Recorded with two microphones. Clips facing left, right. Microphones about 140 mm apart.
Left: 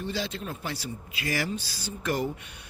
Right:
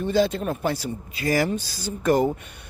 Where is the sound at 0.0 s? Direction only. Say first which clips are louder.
Right 11 dB; 50° right (ahead or behind).